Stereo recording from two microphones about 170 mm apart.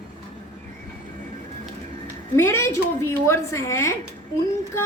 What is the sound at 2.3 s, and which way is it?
A woman's voice, 15° left (ahead or behind).